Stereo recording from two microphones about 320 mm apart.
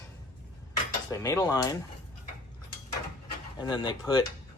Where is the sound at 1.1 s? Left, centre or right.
Centre.